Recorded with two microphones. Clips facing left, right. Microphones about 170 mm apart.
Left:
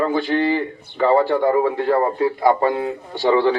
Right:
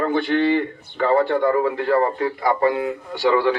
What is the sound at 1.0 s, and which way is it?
A man's voice, 25° left (ahead or behind).